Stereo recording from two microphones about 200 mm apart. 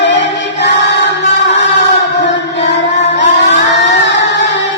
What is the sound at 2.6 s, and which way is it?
Chant, 60° left (ahead or behind).